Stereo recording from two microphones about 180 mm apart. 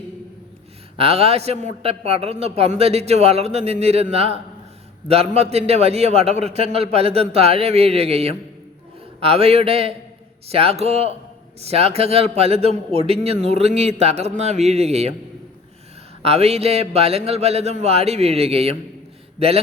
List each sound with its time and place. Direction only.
0.9 s a man's voice: 35° right (ahead or behind)
16.2 s a man's voice: 35° right (ahead or behind)